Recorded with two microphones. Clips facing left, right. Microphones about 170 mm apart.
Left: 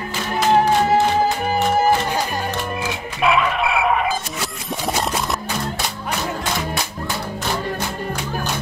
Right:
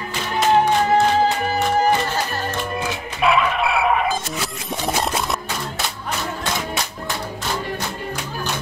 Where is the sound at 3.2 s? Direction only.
Centre (ahead or behind).